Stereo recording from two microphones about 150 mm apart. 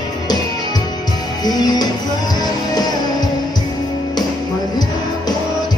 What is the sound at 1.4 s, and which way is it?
Music, 25° left (ahead or behind).